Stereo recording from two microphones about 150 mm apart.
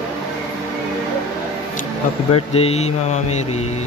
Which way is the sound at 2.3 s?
40° left (ahead or behind).